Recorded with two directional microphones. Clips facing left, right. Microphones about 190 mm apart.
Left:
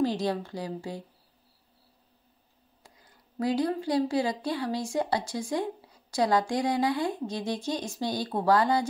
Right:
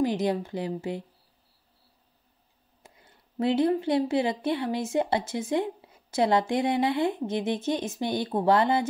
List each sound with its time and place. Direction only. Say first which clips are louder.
0.0 s a woman's voice: right 2 dB; 20° right (ahead or behind)
2.8 s a woman's voice: right 2 dB; 25° right (ahead or behind)